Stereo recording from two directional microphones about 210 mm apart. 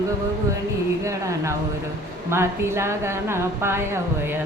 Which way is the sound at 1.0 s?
15° right (ahead or behind).